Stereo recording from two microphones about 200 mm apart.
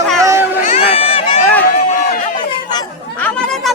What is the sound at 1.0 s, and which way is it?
Run, 30° left (ahead or behind).